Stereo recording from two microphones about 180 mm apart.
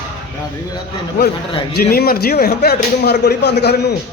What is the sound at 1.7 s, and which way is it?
Speech, 60° left (ahead or behind).